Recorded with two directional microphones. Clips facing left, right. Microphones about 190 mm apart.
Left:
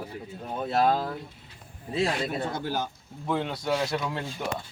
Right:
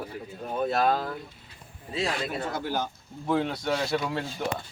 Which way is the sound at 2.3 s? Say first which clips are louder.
Left 1 dB; 25° left (ahead or behind).